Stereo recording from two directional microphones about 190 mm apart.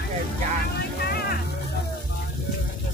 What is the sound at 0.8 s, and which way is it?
Vehicle, 55° left (ahead or behind).